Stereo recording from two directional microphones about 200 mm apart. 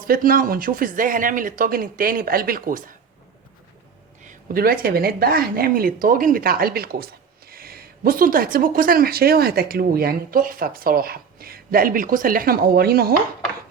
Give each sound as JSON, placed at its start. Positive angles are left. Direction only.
{"t": 0.1, "sound": "speech", "side_deg": -45}
{"t": 4.3, "sound": "speech", "side_deg": -50}